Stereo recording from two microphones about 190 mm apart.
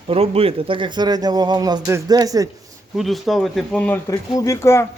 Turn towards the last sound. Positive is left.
turn(degrees=15)  # may be behind; listen again after turning